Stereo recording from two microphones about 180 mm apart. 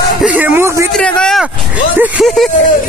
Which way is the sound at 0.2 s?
10° right (ahead or behind).